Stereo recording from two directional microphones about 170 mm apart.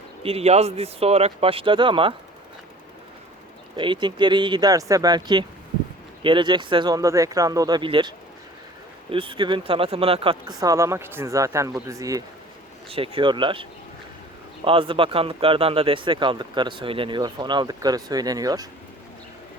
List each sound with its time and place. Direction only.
0.2 s speech: 35° right (ahead or behind)
3.8 s speech: 30° right (ahead or behind)
10.6 s speech: 20° right (ahead or behind)
12.9 s speech: 30° right (ahead or behind)